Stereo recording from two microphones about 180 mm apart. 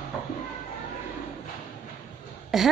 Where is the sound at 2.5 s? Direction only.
Centre (ahead or behind).